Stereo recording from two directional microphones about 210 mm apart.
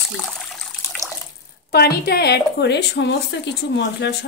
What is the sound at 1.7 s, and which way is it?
A woman's voice, 50° left (ahead or behind).